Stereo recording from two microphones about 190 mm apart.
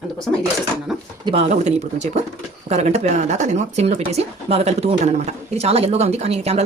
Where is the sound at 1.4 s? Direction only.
35° right (ahead or behind).